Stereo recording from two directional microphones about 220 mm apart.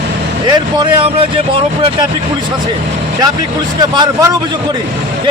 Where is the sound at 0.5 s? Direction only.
20° right (ahead or behind).